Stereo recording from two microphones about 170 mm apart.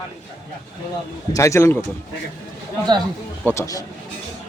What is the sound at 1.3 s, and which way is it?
Speech, 15° left (ahead or behind).